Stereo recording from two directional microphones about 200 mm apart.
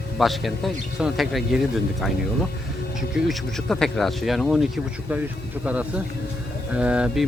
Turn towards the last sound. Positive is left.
turn(degrees=-5)  # may be behind; listen again after turning